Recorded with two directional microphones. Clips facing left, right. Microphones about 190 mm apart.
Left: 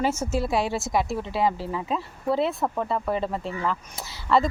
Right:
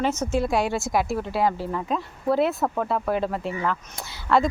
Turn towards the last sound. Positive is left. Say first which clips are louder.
# right 1 dB
turn(degrees=0)  # may be behind; listen again after turning